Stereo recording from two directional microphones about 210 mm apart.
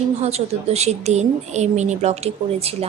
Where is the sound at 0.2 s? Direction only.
30° right (ahead or behind).